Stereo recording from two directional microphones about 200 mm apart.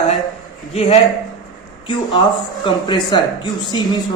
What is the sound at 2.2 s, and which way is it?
Speech, 20° left (ahead or behind).